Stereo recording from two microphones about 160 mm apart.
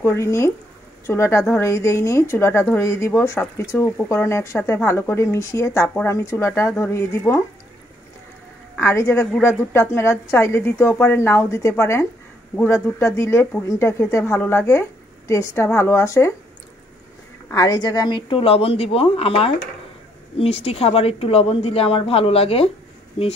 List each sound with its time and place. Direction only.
0.0 s speech: 15° left (ahead or behind)
8.7 s speech: 15° left (ahead or behind)
17.5 s a woman's voice: 20° left (ahead or behind)